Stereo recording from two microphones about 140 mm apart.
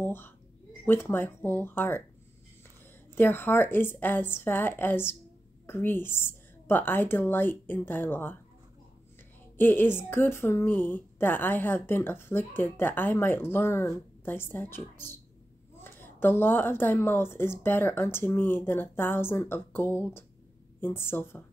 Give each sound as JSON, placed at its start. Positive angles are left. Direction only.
{"t": 0.0, "sound": "a sound", "side_deg": 15}
{"t": 0.8, "sound": "a woman's voice", "side_deg": 15}
{"t": 3.2, "sound": "a woman's voice", "side_deg": 15}
{"t": 9.6, "sound": "a woman's voice", "side_deg": 15}